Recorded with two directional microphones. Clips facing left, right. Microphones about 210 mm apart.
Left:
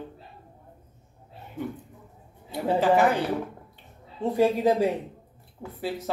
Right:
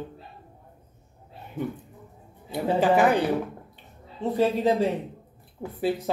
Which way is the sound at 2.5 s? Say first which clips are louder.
Even; 15° right (ahead or behind).